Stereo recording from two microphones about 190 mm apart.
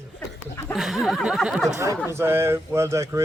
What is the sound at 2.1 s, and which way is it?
Speech, 10° right (ahead or behind).